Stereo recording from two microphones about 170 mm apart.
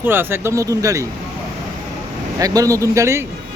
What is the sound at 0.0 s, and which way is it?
Speech, 10° right (ahead or behind).